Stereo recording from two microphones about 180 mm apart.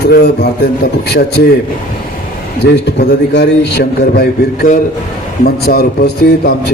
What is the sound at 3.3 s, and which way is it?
Speech, 70° left (ahead or behind).